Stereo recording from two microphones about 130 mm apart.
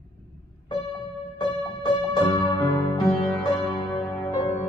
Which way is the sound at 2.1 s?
30° left (ahead or behind).